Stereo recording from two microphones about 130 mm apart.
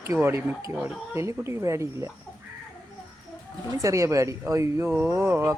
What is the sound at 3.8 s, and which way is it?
Speech, 25° right (ahead or behind).